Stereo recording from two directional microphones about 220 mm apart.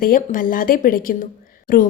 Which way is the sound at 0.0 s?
40° left (ahead or behind).